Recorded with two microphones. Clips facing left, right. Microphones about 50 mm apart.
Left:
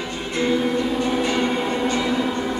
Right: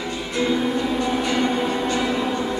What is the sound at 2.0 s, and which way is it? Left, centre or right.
Music, right.